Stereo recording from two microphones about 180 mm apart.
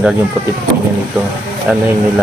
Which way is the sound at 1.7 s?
5° right (ahead or behind).